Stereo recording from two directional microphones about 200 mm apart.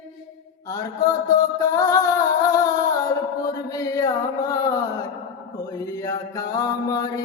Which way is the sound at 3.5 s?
15° left (ahead or behind).